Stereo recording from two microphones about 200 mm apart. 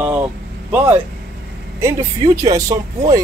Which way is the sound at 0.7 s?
10° right (ahead or behind).